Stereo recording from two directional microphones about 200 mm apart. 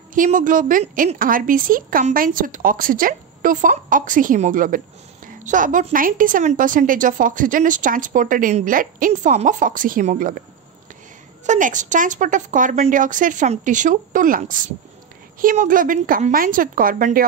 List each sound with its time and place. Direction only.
0.1 s a woman's voice: 40° right (ahead or behind)
11.4 s a woman's voice: 40° right (ahead or behind)